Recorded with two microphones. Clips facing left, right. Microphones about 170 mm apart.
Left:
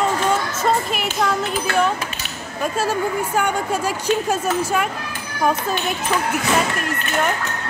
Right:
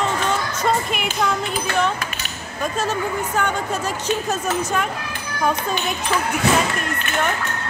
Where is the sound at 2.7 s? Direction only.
10° left (ahead or behind).